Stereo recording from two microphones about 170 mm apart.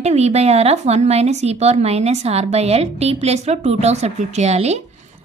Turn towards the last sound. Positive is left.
turn(degrees=-40)  # may be behind; listen again after turning